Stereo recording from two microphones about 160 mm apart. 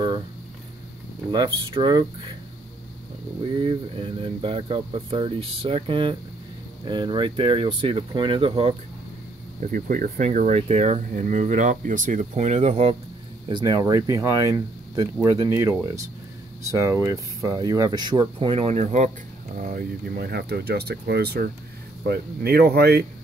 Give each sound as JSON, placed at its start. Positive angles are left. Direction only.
{"t": 1.3, "sound": "speech", "side_deg": -30}
{"t": 3.6, "sound": "speech", "side_deg": -35}
{"t": 9.7, "sound": "speech", "side_deg": -60}
{"t": 13.5, "sound": "speech", "side_deg": -25}
{"t": 19.5, "sound": "speech", "side_deg": -60}